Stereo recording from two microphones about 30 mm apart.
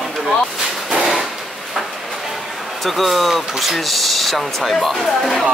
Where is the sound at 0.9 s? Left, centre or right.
Centre.